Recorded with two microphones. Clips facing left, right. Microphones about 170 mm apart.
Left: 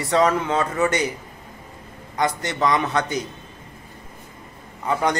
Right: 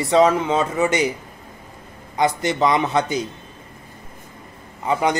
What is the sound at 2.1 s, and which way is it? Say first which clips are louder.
Speech: right 4 dB; 10° right (ahead or behind).